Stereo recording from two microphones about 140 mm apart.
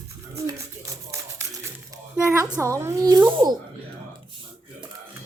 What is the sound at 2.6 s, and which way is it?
Speech, 20° right (ahead or behind).